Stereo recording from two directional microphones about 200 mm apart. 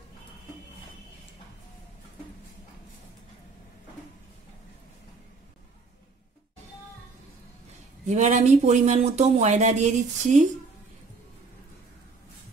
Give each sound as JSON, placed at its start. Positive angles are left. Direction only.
{"t": 8.1, "sound": "speech", "side_deg": -35}